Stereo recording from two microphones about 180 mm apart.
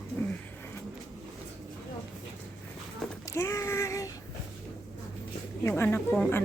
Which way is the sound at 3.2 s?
15° left (ahead or behind).